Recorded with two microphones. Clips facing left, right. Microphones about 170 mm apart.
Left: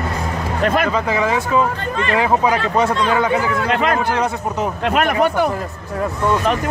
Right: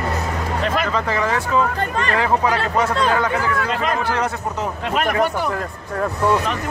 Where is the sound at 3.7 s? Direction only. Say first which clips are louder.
Left 4 dB; 65° left (ahead or behind).